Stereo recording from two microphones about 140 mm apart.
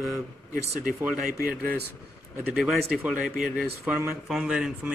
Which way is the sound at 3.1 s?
5° right (ahead or behind).